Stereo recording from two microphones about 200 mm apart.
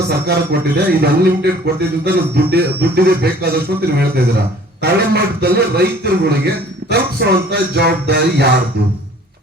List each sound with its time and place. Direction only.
0.1 s speech: 55° right (ahead or behind)